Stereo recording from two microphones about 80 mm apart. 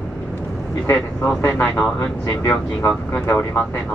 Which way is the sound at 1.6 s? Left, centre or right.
Centre.